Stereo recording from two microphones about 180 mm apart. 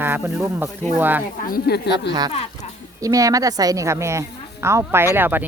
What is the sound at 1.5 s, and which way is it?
Speech, 65° left (ahead or behind).